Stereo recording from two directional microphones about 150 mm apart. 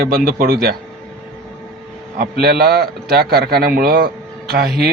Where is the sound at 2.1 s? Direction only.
90° right.